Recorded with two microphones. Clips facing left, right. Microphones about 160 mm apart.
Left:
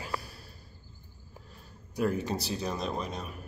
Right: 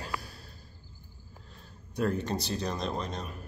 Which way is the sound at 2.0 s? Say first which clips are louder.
Even; 5° left (ahead or behind).